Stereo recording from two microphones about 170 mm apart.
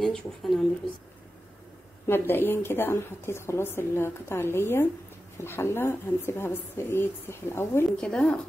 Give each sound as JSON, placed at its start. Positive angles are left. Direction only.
{"t": 0.0, "sound": "speech", "side_deg": 0}
{"t": 2.0, "sound": "a woman's voice", "side_deg": 10}